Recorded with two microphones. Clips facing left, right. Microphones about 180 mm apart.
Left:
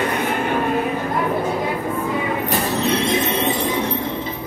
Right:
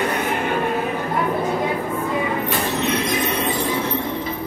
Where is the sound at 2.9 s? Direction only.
25° left (ahead or behind).